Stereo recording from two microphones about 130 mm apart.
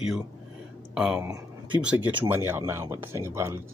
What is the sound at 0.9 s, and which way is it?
Speech, 5° right (ahead or behind).